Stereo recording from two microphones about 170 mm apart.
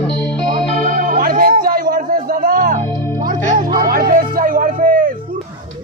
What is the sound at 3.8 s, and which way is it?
Music, 55° right (ahead or behind).